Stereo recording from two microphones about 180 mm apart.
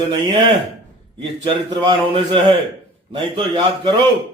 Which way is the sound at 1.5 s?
25° right (ahead or behind).